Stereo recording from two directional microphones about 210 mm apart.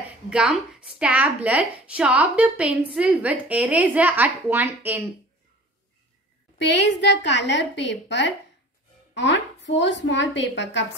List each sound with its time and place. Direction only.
0.3 s a woman's voice: 5° right (ahead or behind)
6.6 s a woman's voice: 55° left (ahead or behind)